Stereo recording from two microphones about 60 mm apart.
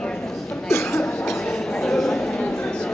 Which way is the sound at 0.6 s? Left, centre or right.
Left.